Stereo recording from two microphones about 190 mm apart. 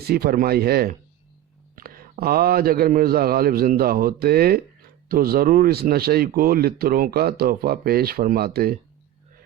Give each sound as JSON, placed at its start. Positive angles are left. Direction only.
{"t": 0.0, "sound": "speech", "side_deg": -55}